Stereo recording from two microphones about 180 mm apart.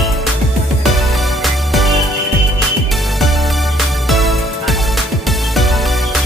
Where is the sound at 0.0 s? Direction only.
Centre (ahead or behind).